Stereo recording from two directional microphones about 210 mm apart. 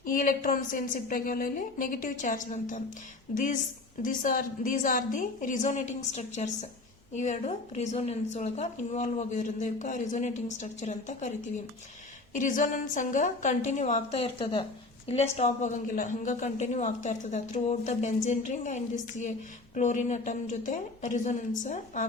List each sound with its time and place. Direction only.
0.0 s a woman's voice: 40° left (ahead or behind)